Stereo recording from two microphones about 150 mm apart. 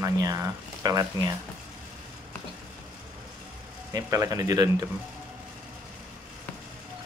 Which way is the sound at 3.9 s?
25° right (ahead or behind).